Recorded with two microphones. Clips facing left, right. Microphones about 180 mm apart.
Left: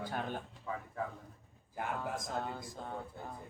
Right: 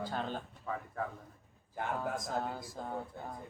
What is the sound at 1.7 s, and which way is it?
Speech, centre (ahead or behind).